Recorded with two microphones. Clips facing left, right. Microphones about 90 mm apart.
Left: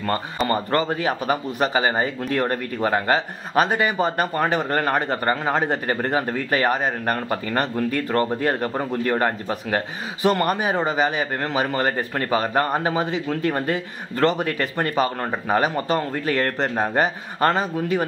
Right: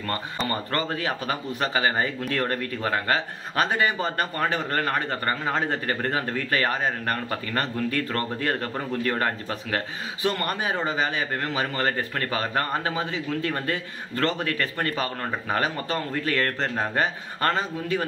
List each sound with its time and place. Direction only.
0.5 s a man's voice: 25° left (ahead or behind)